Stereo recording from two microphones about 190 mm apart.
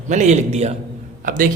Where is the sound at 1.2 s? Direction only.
45° right (ahead or behind).